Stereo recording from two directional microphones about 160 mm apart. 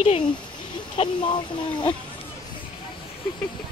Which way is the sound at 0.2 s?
30° left (ahead or behind).